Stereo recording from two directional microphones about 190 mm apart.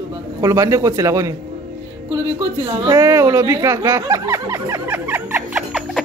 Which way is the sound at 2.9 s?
15° right (ahead or behind).